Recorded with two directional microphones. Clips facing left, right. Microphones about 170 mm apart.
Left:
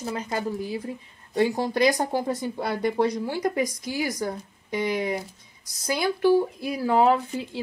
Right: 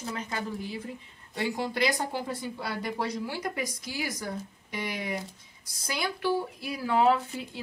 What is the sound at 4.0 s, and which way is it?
Speech, 45° left (ahead or behind).